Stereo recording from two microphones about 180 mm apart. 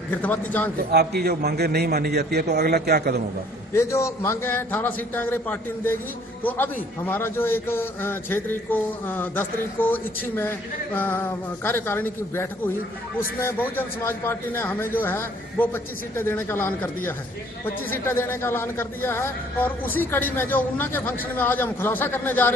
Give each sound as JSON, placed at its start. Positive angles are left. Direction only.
{"t": 0.1, "sound": "speech", "side_deg": 10}
{"t": 0.9, "sound": "a man's voice", "side_deg": -60}
{"t": 3.7, "sound": "speech", "side_deg": 15}